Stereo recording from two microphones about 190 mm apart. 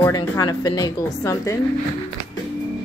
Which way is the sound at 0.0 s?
20° left (ahead or behind).